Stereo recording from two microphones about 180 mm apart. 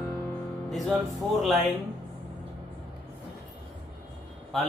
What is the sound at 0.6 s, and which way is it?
Music, centre (ahead or behind).